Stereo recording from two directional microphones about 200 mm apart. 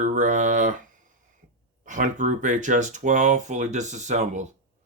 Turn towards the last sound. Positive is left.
turn(degrees=-35)  # may be behind; listen again after turning